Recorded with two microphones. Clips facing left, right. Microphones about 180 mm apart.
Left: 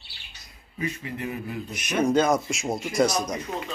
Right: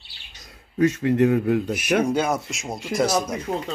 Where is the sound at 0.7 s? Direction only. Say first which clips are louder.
Right 13 dB; 80° right.